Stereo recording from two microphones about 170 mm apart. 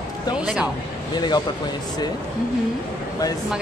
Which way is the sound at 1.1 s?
25° left (ahead or behind).